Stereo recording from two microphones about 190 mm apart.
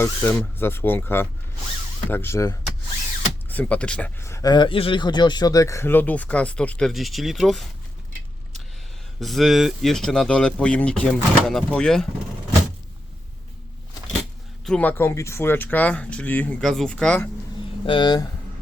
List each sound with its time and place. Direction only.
0.0 s speech: 10° left (ahead or behind)
9.2 s speech: centre (ahead or behind)
14.6 s speech: 5° left (ahead or behind)
17.8 s speech: 25° left (ahead or behind)